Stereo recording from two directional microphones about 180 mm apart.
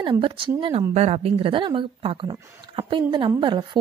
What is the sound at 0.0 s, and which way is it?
Speech, 30° right (ahead or behind).